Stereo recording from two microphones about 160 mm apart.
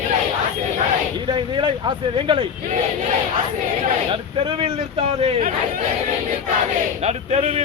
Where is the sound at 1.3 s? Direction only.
30° right (ahead or behind).